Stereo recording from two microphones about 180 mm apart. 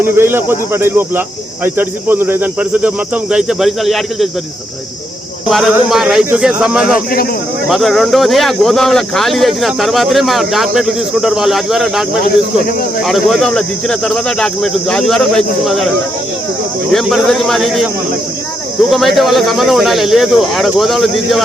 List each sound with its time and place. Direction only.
0.0 s speech: 10° right (ahead or behind)
5.5 s speech: centre (ahead or behind)
12.2 s speech: 55° left (ahead or behind)
13.1 s speech: centre (ahead or behind)
16.9 s speech: centre (ahead or behind)
18.9 s speech: centre (ahead or behind)